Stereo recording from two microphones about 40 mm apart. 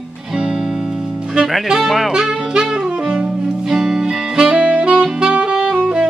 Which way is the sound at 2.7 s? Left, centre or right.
Right.